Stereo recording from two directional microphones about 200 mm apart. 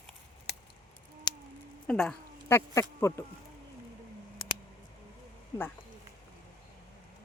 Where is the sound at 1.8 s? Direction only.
5° left (ahead or behind).